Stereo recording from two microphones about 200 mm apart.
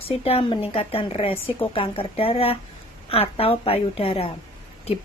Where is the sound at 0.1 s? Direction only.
30° left (ahead or behind).